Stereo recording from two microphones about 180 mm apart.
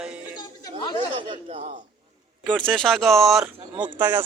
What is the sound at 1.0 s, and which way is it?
Speech, 30° right (ahead or behind).